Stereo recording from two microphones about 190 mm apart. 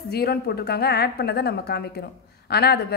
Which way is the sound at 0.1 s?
55° left (ahead or behind).